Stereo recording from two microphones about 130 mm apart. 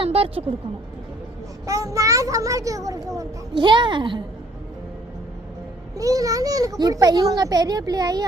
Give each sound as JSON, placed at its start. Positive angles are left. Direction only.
{"t": 0.0, "sound": "speech", "side_deg": -45}
{"t": 1.6, "sound": "a child's voice", "side_deg": -25}
{"t": 3.5, "sound": "a woman's voice", "side_deg": -35}
{"t": 6.0, "sound": "a child's voice", "side_deg": -25}